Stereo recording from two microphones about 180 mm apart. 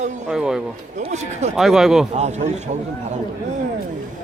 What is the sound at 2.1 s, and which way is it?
Speech, 40° right (ahead or behind).